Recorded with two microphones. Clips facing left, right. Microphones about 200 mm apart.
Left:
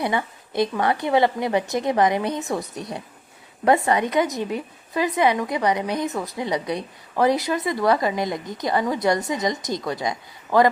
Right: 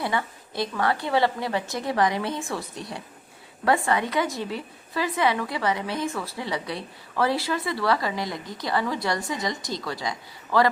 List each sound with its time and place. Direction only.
0.0 s a woman's voice: 20° left (ahead or behind)